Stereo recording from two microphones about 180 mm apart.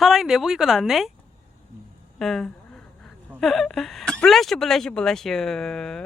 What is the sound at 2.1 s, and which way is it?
Speech, centre (ahead or behind).